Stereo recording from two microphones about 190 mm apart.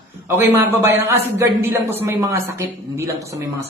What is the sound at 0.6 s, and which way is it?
Speech, 10° right (ahead or behind).